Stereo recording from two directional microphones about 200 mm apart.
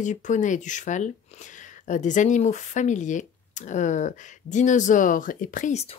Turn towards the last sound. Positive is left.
turn(degrees=40)  # may be behind; listen again after turning